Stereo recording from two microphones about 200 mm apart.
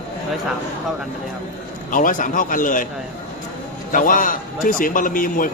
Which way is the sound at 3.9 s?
40° left (ahead or behind).